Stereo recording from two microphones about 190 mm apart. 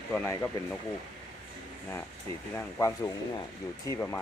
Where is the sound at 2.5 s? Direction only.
15° left (ahead or behind).